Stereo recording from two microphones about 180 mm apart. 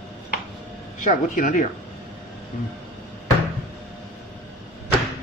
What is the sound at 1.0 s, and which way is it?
Speech, 45° left (ahead or behind).